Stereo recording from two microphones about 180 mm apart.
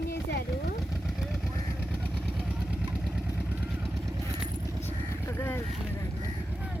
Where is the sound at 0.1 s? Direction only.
65° left (ahead or behind).